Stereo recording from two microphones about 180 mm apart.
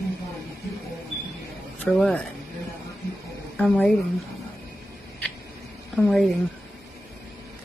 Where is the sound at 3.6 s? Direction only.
5° left (ahead or behind).